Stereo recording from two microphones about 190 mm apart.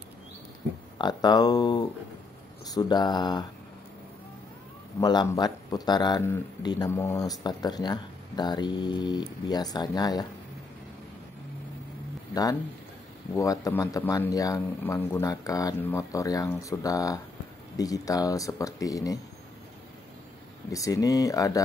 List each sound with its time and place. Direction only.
0.9 s speech: 20° left (ahead or behind)
5.0 s speech: 20° left (ahead or behind)
13.3 s speech: 15° left (ahead or behind)
20.7 s speech: 20° left (ahead or behind)